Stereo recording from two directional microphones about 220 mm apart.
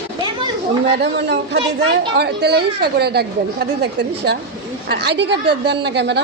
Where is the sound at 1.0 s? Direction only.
50° right (ahead or behind).